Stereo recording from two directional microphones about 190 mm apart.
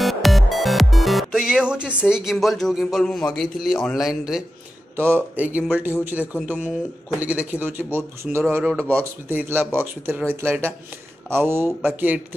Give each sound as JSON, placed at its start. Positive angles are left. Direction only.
{"t": 0.0, "sound": "music", "side_deg": 0}
{"t": 2.0, "sound": "speech", "side_deg": -5}